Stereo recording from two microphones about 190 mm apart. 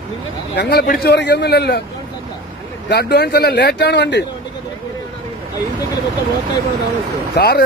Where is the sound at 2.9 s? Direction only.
60° left (ahead or behind).